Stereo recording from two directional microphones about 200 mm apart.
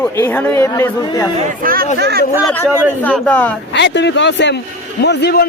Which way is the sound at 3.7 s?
60° left (ahead or behind).